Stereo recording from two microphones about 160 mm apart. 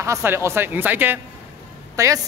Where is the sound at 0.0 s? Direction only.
15° right (ahead or behind).